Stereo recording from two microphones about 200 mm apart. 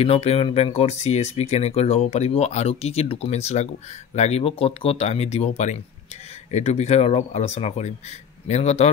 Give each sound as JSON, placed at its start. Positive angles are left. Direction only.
{"t": 0.0, "sound": "speech", "side_deg": 30}